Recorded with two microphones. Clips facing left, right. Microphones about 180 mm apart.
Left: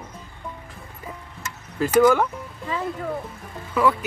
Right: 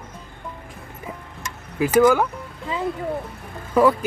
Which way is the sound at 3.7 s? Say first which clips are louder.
Right 4 dB; 35° right (ahead or behind).